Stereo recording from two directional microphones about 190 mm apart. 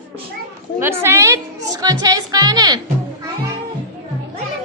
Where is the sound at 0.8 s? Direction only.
15° right (ahead or behind).